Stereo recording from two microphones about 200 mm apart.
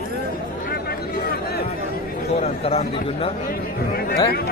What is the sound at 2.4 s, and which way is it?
Speech, 30° left (ahead or behind).